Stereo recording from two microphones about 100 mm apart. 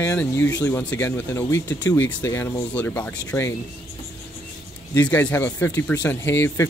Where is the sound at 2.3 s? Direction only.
20° left (ahead or behind).